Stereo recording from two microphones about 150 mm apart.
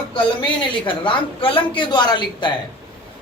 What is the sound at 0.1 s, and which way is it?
Speech, 35° left (ahead or behind).